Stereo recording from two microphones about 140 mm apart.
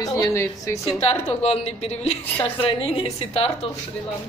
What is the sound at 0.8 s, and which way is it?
A woman's voice, 50° left (ahead or behind).